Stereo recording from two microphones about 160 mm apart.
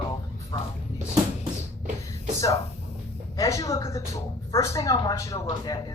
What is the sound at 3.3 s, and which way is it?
A woman's voice, 20° left (ahead or behind).